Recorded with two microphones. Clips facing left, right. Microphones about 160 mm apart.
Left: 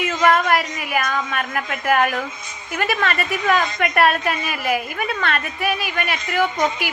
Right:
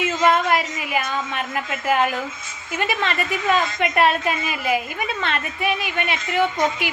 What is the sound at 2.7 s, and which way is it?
A woman's voice, 20° right (ahead or behind).